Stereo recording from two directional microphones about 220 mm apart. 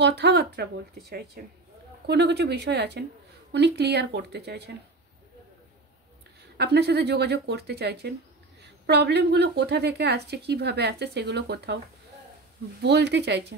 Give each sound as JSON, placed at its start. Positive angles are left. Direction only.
{"t": 0.0, "sound": "speech", "side_deg": -50}
{"t": 6.5, "sound": "speech", "side_deg": -50}
{"t": 12.8, "sound": "speech", "side_deg": -50}